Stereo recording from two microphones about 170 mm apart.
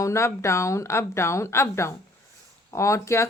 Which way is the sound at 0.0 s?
15° left (ahead or behind).